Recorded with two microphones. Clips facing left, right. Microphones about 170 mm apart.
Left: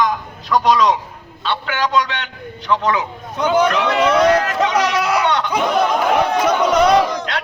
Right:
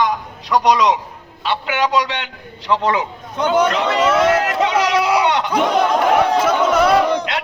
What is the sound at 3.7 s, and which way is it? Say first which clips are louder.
Speech: left 1 dB; 25° right (ahead or behind).